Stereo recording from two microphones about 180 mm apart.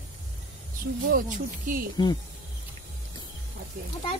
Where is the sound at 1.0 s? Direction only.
50° right (ahead or behind).